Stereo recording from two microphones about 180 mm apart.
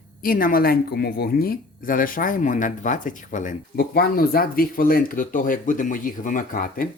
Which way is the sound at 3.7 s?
60° left (ahead or behind).